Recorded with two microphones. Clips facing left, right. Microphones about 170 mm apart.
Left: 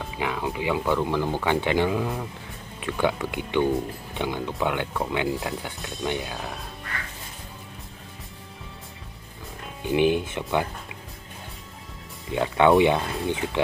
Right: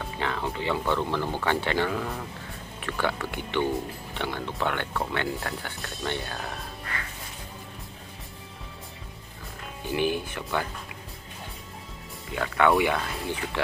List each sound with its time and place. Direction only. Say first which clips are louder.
0.2 s speech: left 3 dB; 10° left (ahead or behind)
6.3 s speech: left 1 dB; centre (ahead or behind)
9.8 s speech: left 6 dB; 20° left (ahead or behind)
12.4 s speech: left 4 dB; 25° left (ahead or behind)